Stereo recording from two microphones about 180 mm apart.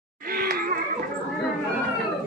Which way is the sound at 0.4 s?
55° right (ahead or behind).